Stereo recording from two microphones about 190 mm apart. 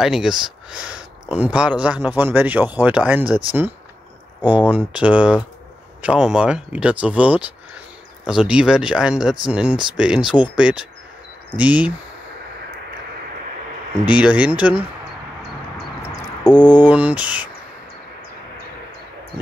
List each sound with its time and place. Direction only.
0.0 s speech: centre (ahead or behind)
4.5 s speech: 5° right (ahead or behind)
14.0 s speech: 5° right (ahead or behind)
16.7 s speech: 10° right (ahead or behind)